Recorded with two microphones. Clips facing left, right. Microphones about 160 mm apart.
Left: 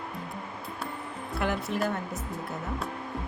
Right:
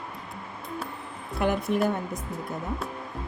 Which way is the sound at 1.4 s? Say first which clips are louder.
Right 4 dB; 20° right (ahead or behind).